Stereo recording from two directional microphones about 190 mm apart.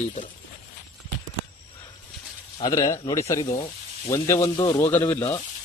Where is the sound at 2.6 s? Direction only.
20° left (ahead or behind).